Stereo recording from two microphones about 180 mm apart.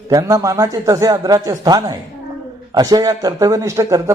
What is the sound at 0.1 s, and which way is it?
A man's voice, 20° right (ahead or behind).